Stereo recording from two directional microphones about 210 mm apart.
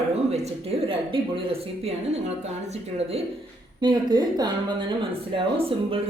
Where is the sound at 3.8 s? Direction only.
20° right (ahead or behind).